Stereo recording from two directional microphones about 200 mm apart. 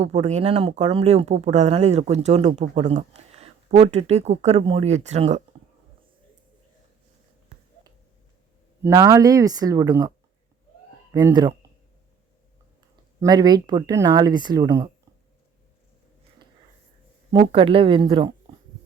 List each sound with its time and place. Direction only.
0.0 s speech: 35° right (ahead or behind)
8.8 s speech: 15° right (ahead or behind)
11.1 s speech: 20° right (ahead or behind)
13.1 s speech: 20° right (ahead or behind)
17.3 s speech: 25° right (ahead or behind)